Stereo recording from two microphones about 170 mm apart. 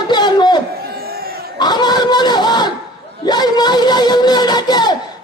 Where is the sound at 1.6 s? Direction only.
25° left (ahead or behind).